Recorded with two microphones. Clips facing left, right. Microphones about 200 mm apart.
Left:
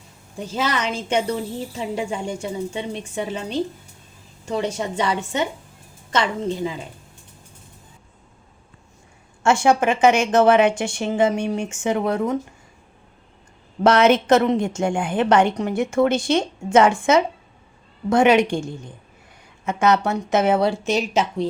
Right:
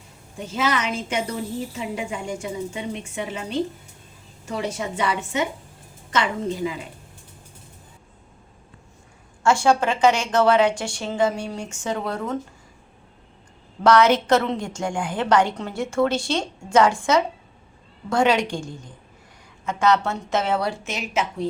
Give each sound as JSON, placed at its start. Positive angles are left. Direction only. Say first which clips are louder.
{"t": 0.5, "sound": "a woman's voice", "louder": "even", "side_deg": 35}
{"t": 9.4, "sound": "a woman's voice", "louder": "left 2 dB", "side_deg": 20}
{"t": 13.8, "sound": "a woman's voice", "louder": "left 2 dB", "side_deg": 25}
{"t": 19.6, "sound": "a woman's voice", "louder": "left 2 dB", "side_deg": 20}